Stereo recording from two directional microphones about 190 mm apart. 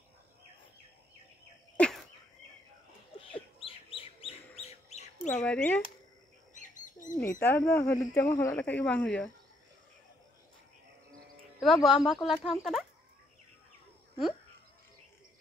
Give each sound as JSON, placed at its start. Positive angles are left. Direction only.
{"t": 1.8, "sound": "a sound", "side_deg": 5}
{"t": 3.3, "sound": "chicken", "side_deg": 30}
{"t": 5.4, "sound": "speech", "side_deg": 5}
{"t": 6.5, "sound": "bird", "side_deg": 40}
{"t": 7.2, "sound": "speech", "side_deg": 15}
{"t": 7.9, "sound": "speech", "side_deg": 15}
{"t": 11.6, "sound": "speech", "side_deg": 0}